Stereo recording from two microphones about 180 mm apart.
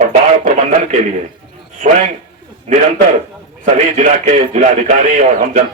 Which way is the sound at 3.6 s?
45° right (ahead or behind).